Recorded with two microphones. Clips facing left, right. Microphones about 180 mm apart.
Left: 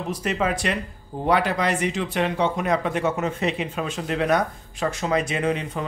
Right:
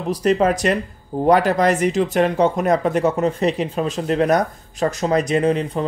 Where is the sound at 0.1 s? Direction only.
40° right (ahead or behind).